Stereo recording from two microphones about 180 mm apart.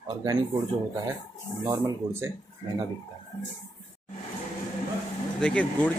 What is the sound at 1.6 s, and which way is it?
Speech, 15° right (ahead or behind).